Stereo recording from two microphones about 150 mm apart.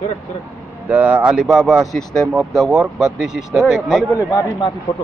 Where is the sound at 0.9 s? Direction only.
10° right (ahead or behind).